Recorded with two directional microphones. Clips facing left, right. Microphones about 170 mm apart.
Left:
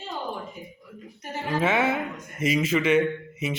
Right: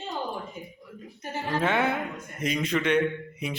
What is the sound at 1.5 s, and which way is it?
A man's voice, 5° left (ahead or behind).